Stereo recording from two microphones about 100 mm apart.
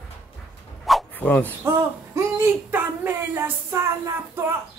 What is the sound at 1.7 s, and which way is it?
A woman's voice, 30° right (ahead or behind).